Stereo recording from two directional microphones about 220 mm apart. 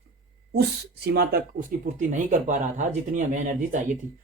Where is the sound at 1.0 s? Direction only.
45° right (ahead or behind).